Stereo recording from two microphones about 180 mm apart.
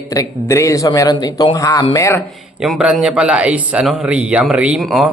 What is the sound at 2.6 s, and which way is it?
Speech, 5° right (ahead or behind).